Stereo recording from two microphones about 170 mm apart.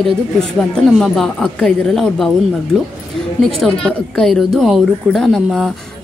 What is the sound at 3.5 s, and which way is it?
A woman's voice, 5° left (ahead or behind).